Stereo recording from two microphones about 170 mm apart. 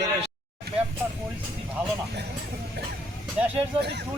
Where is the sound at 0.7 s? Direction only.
70° right (ahead or behind).